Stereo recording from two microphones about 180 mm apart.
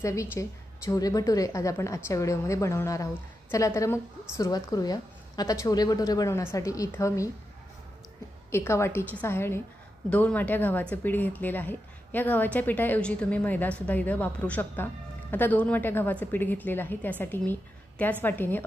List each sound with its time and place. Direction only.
0.0 s a woman's voice: 15° left (ahead or behind)
8.5 s a woman's voice: 15° left (ahead or behind)